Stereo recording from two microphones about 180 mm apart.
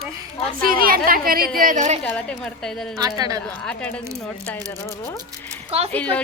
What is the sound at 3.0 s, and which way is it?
Speech, 20° right (ahead or behind).